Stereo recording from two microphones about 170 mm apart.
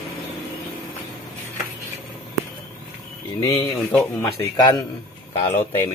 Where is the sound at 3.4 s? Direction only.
20° left (ahead or behind).